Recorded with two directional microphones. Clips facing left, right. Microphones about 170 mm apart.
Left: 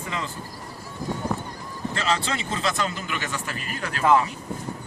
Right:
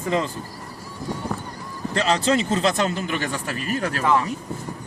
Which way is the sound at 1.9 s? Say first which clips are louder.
Right 7 dB; 40° right (ahead or behind).